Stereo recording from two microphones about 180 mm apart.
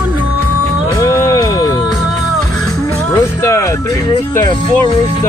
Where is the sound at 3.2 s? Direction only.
15° left (ahead or behind).